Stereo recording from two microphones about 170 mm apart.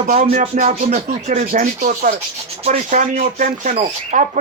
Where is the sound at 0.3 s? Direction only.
45° right (ahead or behind).